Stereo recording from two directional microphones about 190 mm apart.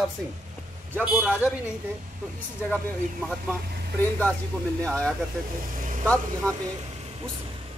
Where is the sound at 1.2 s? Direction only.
10° left (ahead or behind).